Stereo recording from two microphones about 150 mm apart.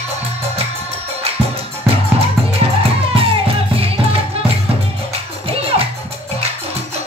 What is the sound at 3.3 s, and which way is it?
Music, 40° right (ahead or behind).